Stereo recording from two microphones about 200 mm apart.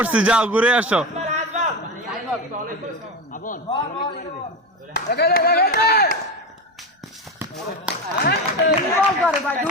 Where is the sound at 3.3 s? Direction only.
40° left (ahead or behind).